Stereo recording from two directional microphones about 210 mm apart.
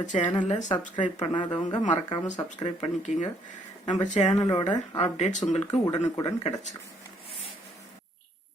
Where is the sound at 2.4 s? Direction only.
35° left (ahead or behind).